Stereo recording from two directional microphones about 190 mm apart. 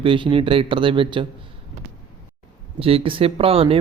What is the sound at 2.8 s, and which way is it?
Speech, 30° right (ahead or behind).